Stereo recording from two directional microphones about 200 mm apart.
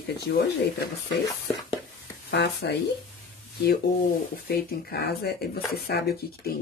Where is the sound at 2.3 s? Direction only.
55° left (ahead or behind).